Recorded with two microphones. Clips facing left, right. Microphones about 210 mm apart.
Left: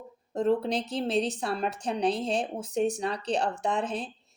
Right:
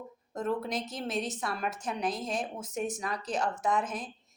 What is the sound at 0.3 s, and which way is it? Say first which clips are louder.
A woman's voice: left 6 dB; 30° left (ahead or behind).